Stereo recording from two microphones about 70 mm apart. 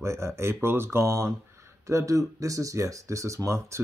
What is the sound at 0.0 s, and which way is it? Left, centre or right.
Speech, right.